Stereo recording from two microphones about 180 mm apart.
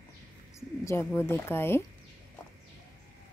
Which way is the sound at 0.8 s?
15° left (ahead or behind).